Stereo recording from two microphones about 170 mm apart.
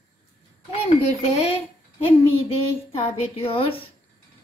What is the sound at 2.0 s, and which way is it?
A woman's voice, 35° left (ahead or behind).